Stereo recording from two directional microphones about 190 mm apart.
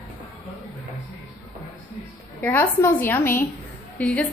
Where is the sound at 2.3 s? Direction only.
10° left (ahead or behind).